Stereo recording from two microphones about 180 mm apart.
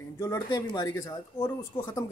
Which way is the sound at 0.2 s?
20° left (ahead or behind).